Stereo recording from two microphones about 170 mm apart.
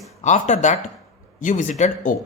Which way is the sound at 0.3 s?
45° left (ahead or behind).